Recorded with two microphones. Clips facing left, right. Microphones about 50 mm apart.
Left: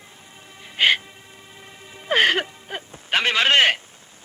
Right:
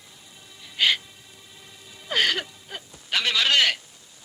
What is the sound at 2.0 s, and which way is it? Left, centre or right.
Speech, left.